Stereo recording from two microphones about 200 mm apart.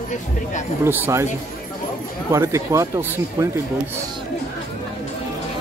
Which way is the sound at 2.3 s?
15° right (ahead or behind).